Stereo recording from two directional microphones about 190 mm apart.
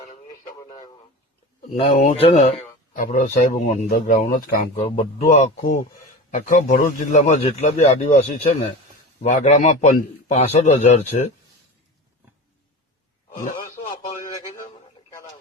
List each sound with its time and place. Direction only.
1.7 s a man's voice: 30° left (ahead or behind)
2.9 s speech: 45° left (ahead or behind)
4.7 s a man's voice: 30° left (ahead or behind)
6.3 s a man's voice: 40° left (ahead or behind)